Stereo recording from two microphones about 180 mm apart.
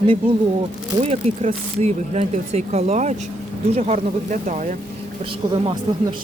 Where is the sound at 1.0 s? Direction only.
35° right (ahead or behind).